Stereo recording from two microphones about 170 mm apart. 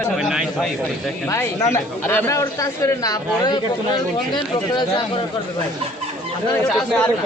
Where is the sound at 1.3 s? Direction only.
15° left (ahead or behind).